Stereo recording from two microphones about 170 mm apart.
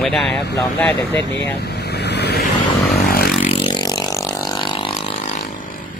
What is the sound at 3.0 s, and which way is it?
Vehicle, 60° left (ahead or behind).